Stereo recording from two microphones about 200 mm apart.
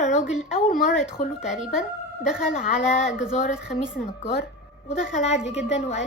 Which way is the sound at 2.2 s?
5° right (ahead or behind).